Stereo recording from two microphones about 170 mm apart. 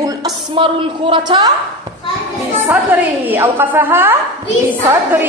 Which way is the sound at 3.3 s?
10° right (ahead or behind).